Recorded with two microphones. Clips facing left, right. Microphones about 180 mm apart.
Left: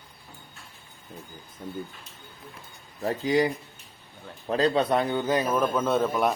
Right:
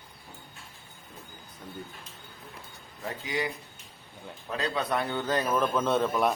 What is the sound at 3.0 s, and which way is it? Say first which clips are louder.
A man's voice: left 9 dB; 35° left (ahead or behind).